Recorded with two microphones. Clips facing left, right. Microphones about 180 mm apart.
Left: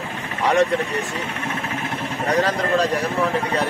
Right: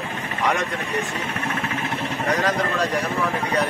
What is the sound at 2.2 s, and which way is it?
Speech, 30° left (ahead or behind).